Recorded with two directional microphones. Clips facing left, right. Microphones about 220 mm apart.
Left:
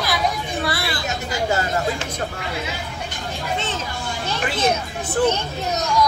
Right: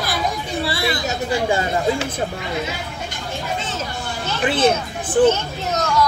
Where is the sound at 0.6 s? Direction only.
25° right (ahead or behind).